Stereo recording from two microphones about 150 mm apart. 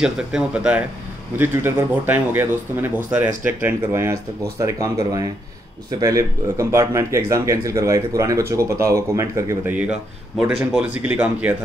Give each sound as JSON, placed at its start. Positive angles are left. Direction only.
{"t": 0.0, "sound": "speech", "side_deg": -5}
{"t": 10.6, "sound": "speech", "side_deg": -10}